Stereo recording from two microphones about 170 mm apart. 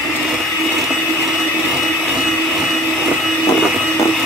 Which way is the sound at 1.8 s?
Centre (ahead or behind).